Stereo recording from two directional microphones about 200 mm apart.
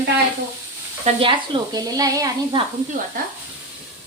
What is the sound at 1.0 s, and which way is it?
Speech, 25° right (ahead or behind).